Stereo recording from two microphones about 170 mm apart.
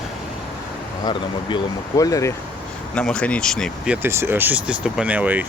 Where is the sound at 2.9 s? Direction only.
5° left (ahead or behind).